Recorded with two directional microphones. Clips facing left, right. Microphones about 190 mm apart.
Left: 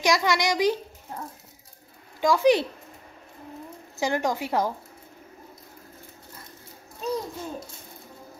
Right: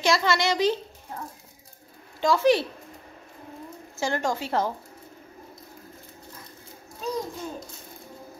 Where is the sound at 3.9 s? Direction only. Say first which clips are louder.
Left 1 dB; 15° left (ahead or behind).